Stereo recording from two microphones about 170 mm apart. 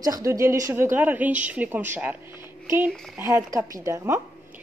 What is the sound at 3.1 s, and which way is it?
A woman's voice, 20° right (ahead or behind).